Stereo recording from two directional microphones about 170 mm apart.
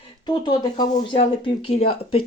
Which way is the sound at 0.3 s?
25° left (ahead or behind).